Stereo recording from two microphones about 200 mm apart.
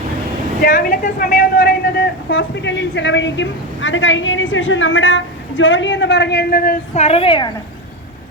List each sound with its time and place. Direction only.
0.6 s a man's voice: 45° left (ahead or behind)
2.3 s a woman's voice: 60° left (ahead or behind)
6.9 s a woman's voice: 30° left (ahead or behind)